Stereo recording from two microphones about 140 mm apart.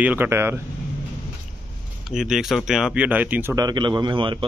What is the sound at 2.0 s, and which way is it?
Speech, 5° right (ahead or behind).